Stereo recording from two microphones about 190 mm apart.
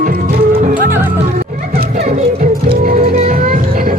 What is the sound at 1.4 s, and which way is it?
Music, 45° right (ahead or behind).